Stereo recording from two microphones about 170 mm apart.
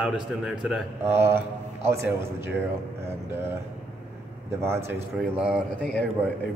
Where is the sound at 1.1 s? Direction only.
15° right (ahead or behind).